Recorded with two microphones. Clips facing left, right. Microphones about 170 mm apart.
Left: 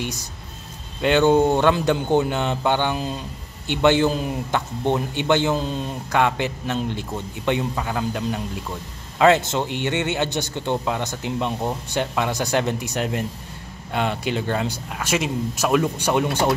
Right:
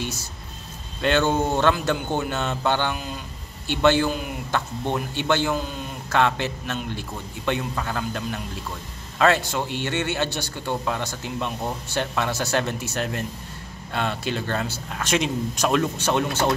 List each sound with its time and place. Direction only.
0.0 s speech: 15° left (ahead or behind)
4.1 s a man's voice: 30° left (ahead or behind)
4.5 s a man's voice: 20° left (ahead or behind)
6.1 s speech: 15° left (ahead or behind)